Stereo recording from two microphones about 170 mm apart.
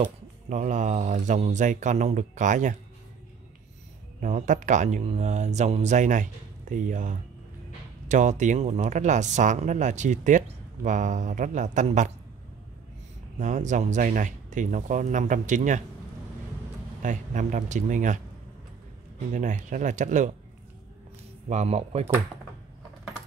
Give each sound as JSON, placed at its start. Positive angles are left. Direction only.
{"t": 0.0, "sound": "speech", "side_deg": -45}
{"t": 4.2, "sound": "speech", "side_deg": -45}
{"t": 13.4, "sound": "speech", "side_deg": -45}
{"t": 17.0, "sound": "speech", "side_deg": -50}
{"t": 19.3, "sound": "speech", "side_deg": -50}
{"t": 21.5, "sound": "speech", "side_deg": -40}